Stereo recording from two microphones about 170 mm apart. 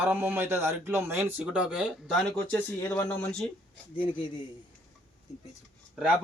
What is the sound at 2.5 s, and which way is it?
Speech, 10° left (ahead or behind).